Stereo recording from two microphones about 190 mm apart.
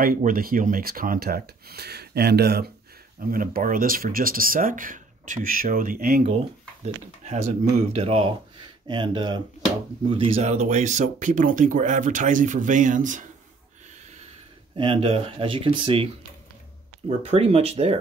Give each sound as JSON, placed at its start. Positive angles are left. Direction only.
{"t": 0.0, "sound": "speech", "side_deg": -45}
{"t": 6.2, "sound": "speech", "side_deg": -35}
{"t": 14.8, "sound": "speech", "side_deg": -30}
{"t": 17.2, "sound": "speech", "side_deg": -30}